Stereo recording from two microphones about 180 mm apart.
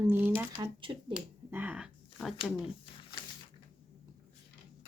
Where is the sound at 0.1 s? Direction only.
10° right (ahead or behind).